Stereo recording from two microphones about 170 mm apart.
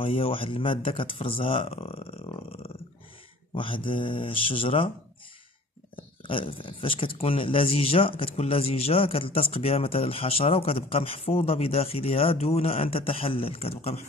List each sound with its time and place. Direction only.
0.0 s speech: 35° left (ahead or behind)
5.9 s speech: 30° left (ahead or behind)